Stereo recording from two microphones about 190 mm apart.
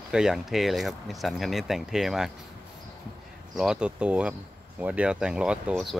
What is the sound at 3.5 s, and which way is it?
Speech, 5° right (ahead or behind).